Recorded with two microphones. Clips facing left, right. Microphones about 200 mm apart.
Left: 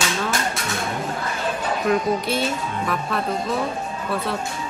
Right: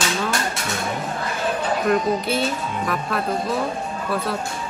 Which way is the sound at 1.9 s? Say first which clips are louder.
Even; centre (ahead or behind).